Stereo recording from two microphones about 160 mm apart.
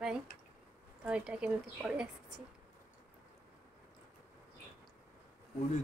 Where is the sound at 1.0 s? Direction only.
5° right (ahead or behind).